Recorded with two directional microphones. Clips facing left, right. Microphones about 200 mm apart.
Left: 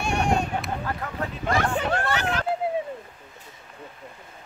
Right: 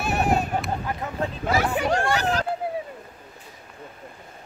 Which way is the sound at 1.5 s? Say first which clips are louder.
Right 1 dB; 5° right (ahead or behind).